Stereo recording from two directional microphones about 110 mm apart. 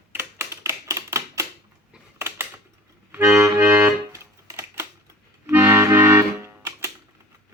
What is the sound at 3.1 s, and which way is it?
Accordion, 25° right (ahead or behind).